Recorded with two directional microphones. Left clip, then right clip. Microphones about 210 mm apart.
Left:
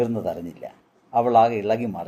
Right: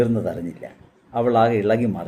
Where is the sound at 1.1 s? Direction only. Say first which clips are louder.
Left 1 dB; 25° left (ahead or behind).